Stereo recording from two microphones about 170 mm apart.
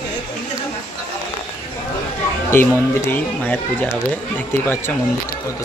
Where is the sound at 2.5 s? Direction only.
10° left (ahead or behind).